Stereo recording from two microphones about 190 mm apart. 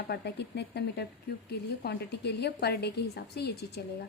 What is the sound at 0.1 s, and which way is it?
A woman's voice, 60° left (ahead or behind).